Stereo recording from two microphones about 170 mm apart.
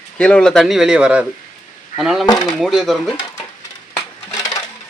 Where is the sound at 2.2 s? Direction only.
25° left (ahead or behind).